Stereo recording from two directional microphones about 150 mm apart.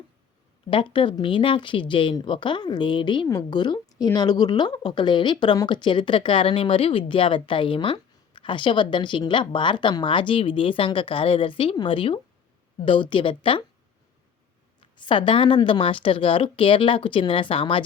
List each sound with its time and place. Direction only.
0.7 s speech: 35° left (ahead or behind)
14.8 s speech: 35° left (ahead or behind)